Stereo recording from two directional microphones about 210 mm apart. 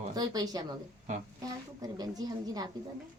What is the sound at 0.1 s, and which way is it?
A woman's voice, 20° right (ahead or behind).